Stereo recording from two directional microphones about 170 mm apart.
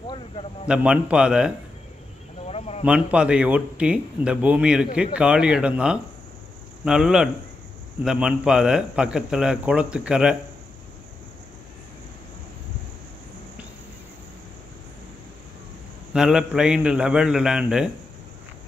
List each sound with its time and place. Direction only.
0.7 s a man's voice: 5° right (ahead or behind)
2.4 s a sound: 40° left (ahead or behind)
2.8 s a man's voice: 5° right (ahead or behind)
16.1 s a man's voice: 5° right (ahead or behind)